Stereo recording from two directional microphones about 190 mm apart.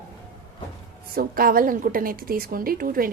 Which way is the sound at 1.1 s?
50° right (ahead or behind).